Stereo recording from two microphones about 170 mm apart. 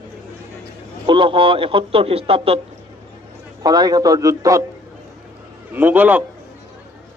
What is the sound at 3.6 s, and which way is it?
Speech, 20° right (ahead or behind).